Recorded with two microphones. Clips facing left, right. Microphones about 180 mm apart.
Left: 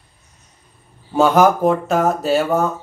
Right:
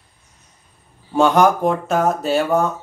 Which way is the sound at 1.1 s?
Centre (ahead or behind).